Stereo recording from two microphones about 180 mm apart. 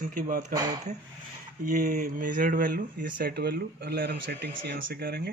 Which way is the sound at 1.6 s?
45° right (ahead or behind).